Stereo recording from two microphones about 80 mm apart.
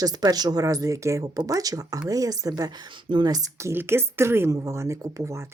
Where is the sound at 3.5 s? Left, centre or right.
Right.